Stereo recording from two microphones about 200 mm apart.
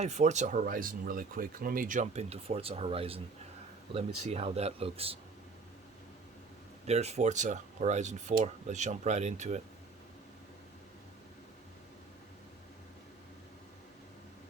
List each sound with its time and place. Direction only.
0.0 s speech: 35° right (ahead or behind)
4.3 s speech: 30° right (ahead or behind)
6.8 s speech: 35° right (ahead or behind)